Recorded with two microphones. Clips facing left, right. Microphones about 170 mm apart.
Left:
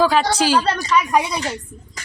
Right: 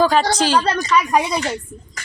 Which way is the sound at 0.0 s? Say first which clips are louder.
Right 1 dB; 5° left (ahead or behind).